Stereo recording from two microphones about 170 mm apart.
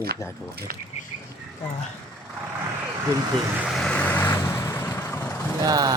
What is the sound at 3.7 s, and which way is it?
Vehicle, 5° left (ahead or behind).